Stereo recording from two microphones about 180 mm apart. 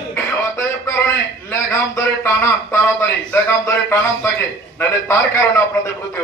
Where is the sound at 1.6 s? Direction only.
15° left (ahead or behind).